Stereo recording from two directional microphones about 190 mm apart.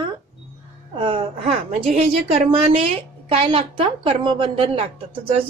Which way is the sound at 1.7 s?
35° right (ahead or behind).